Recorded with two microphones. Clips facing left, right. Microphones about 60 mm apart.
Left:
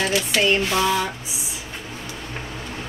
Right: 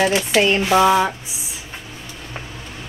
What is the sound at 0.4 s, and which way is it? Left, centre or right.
Speech, centre.